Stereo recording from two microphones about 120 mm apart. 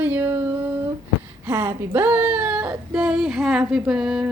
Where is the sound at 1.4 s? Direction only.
25° right (ahead or behind).